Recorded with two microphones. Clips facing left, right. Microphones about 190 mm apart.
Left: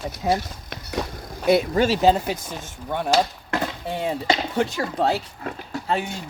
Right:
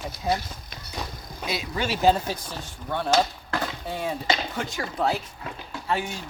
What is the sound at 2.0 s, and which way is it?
Speech, 20° left (ahead or behind).